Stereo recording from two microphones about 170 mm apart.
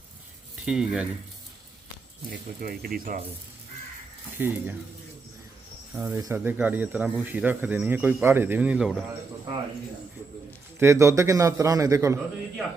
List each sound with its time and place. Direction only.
0.6 s speech: 5° right (ahead or behind)
2.6 s speech: 60° right (ahead or behind)
4.4 s speech: 10° right (ahead or behind)
5.9 s speech: 10° right (ahead or behind)
10.8 s speech: 15° right (ahead or behind)